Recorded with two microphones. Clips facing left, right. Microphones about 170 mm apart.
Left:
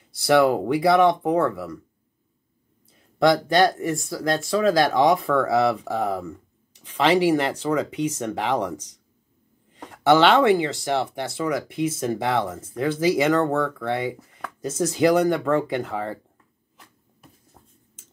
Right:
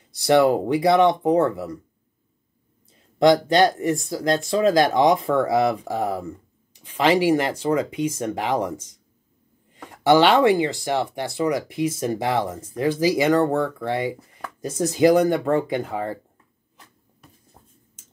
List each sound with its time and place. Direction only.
0.2 s speech: 20° right (ahead or behind)
3.2 s speech: 20° right (ahead or behind)
10.0 s speech: 10° right (ahead or behind)
17.6 s a sound: 10° right (ahead or behind)